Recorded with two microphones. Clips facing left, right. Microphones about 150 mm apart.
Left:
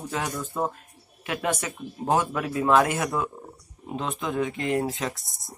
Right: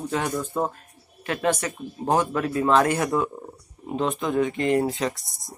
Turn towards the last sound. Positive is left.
turn(degrees=0)  # may be behind; listen again after turning